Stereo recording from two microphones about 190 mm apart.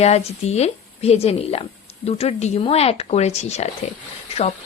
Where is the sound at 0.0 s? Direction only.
35° left (ahead or behind).